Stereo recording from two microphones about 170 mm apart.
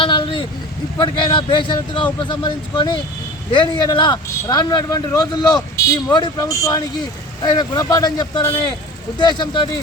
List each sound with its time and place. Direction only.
0.0 s vehicle: 30° left (ahead or behind)
0.9 s speech: 30° left (ahead or behind)